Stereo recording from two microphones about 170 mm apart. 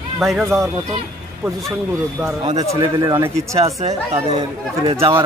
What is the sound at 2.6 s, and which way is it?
Speech, 20° right (ahead or behind).